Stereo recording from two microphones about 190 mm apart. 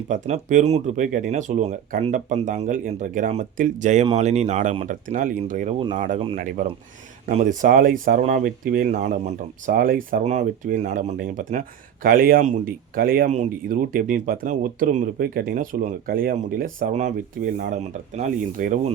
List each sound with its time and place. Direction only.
0.1 s speech: 40° right (ahead or behind)